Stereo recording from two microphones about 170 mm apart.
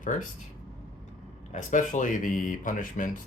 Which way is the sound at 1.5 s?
50° left (ahead or behind).